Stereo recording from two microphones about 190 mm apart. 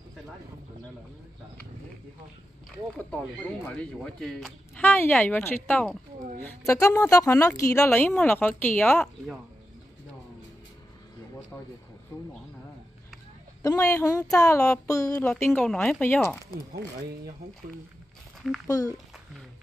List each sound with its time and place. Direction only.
2.9 s speech: 10° left (ahead or behind)
11.5 s a sound: 10° left (ahead or behind)
13.6 s speech: 15° left (ahead or behind)
18.7 s speech: 15° left (ahead or behind)